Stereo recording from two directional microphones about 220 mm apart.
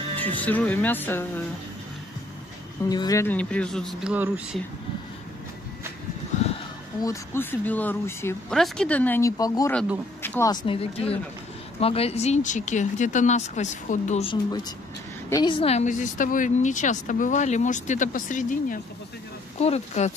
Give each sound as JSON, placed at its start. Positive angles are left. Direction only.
{"t": 0.2, "sound": "speech", "side_deg": 5}
{"t": 2.9, "sound": "speech", "side_deg": 15}
{"t": 7.0, "sound": "a woman's voice", "side_deg": 10}